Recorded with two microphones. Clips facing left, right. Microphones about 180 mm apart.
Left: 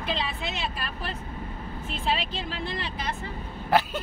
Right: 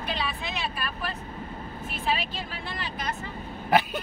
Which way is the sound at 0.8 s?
30° left (ahead or behind).